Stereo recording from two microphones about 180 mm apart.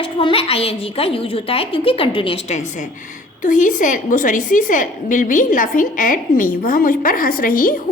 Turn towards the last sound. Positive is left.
turn(degrees=50)  # may be behind; listen again after turning